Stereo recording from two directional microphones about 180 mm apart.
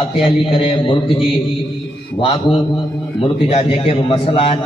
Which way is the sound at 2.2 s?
30° left (ahead or behind).